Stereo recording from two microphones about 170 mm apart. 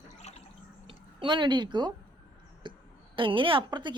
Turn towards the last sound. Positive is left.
turn(degrees=-25)  # may be behind; listen again after turning